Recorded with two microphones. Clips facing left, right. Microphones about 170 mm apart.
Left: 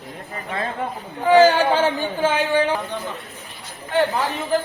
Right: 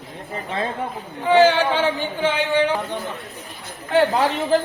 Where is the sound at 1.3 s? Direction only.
40° left (ahead or behind).